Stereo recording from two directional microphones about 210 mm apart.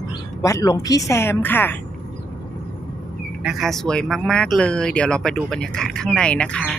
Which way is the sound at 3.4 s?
Centre (ahead or behind).